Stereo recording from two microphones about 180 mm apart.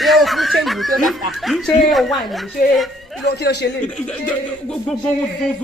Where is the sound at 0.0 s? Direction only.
Centre (ahead or behind).